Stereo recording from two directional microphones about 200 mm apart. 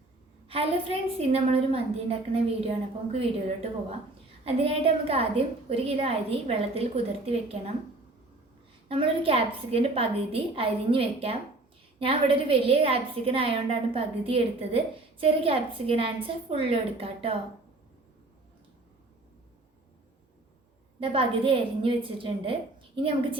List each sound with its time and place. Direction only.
0.4 s a woman's voice: 30° right (ahead or behind)
8.9 s a woman's voice: 30° right (ahead or behind)
21.0 s a woman's voice: 25° right (ahead or behind)